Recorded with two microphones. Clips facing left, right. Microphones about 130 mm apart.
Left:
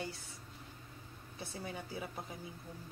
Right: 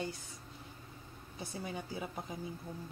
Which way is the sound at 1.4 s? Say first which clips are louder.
Right 2 dB; 20° right (ahead or behind).